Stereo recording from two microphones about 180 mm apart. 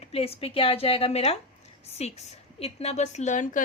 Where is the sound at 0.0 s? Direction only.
35° left (ahead or behind).